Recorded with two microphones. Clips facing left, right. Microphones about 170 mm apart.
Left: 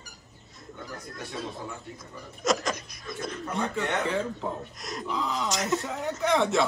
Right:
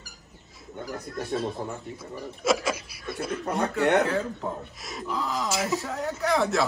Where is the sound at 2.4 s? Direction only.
5° right (ahead or behind).